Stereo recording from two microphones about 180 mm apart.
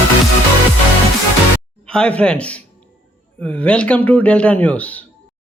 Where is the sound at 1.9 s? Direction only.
5° left (ahead or behind).